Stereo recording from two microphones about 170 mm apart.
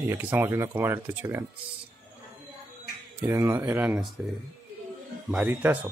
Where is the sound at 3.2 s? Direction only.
15° right (ahead or behind).